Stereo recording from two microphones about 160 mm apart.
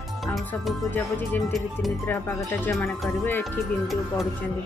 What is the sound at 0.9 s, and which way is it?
Speech, 10° left (ahead or behind).